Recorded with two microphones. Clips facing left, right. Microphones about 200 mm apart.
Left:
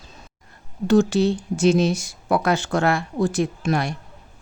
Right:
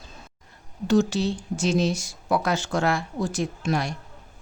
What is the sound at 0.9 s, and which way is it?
A woman's voice, 55° left (ahead or behind).